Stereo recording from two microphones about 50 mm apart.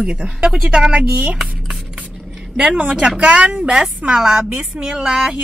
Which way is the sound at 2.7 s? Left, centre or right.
Right.